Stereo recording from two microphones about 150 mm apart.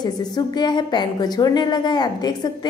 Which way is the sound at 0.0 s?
25° left (ahead or behind).